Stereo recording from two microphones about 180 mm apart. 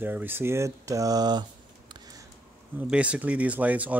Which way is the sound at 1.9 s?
20° right (ahead or behind).